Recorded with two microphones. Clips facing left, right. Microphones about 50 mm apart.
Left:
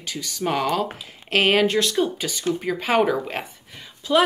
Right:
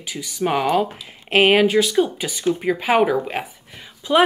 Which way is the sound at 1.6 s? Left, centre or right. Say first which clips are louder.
Right 4 dB; centre.